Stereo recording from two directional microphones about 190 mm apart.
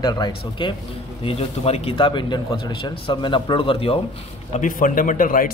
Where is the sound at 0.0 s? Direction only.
20° left (ahead or behind).